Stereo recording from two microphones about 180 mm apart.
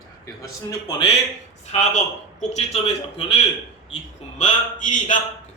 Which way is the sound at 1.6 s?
40° left (ahead or behind).